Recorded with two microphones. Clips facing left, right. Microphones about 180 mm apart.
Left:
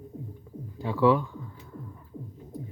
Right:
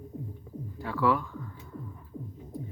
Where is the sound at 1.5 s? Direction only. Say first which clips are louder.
Right 1 dB; centre (ahead or behind).